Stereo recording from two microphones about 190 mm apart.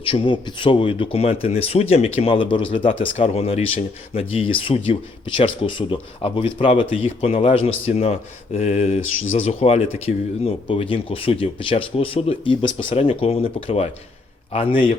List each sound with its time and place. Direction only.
0.0 s speech: 25° left (ahead or behind)